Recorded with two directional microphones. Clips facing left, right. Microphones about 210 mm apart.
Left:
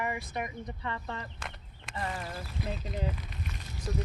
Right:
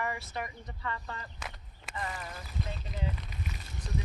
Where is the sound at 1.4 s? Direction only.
5° right (ahead or behind).